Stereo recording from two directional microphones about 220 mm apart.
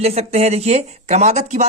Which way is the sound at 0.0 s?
30° right (ahead or behind).